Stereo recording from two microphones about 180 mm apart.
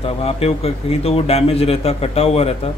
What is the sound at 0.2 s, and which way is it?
Speech, 35° left (ahead or behind).